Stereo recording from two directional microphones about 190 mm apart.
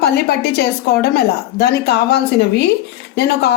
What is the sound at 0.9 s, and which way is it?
A woman's voice, 55° left (ahead or behind).